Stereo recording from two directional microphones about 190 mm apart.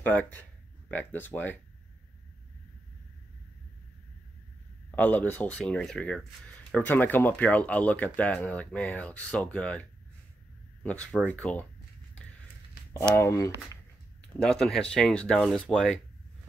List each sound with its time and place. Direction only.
0.0 s speech: 10° left (ahead or behind)
4.9 s speech: 10° left (ahead or behind)
13.1 s speech: 15° left (ahead or behind)
14.4 s speech: 5° left (ahead or behind)